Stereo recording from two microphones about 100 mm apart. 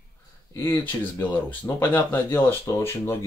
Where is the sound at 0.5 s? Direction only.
25° left (ahead or behind).